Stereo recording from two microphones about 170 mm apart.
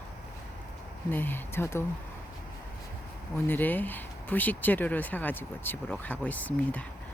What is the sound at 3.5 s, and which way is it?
Speech, 10° left (ahead or behind).